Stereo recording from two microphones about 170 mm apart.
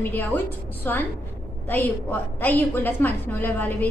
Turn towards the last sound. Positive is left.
turn(degrees=10)  # may be behind; listen again after turning